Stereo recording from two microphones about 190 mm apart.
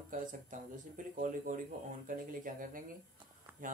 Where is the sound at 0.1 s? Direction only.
45° right (ahead or behind).